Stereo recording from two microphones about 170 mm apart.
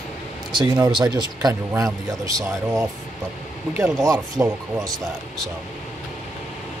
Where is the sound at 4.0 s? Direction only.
20° right (ahead or behind).